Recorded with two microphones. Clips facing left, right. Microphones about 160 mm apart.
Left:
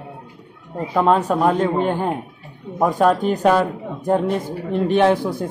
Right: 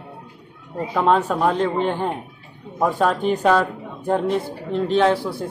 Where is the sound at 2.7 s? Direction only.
15° left (ahead or behind).